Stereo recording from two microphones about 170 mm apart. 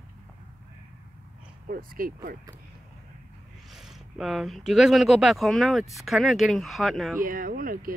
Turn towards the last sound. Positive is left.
turn(degrees=-55)  # may be behind; listen again after turning